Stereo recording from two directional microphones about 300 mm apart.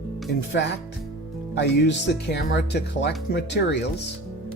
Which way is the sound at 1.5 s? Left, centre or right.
Left.